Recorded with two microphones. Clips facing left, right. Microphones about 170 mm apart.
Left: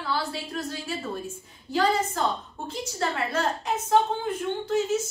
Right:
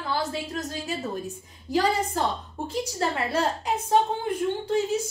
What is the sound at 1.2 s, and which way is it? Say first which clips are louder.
Speech: right 2 dB; 15° right (ahead or behind).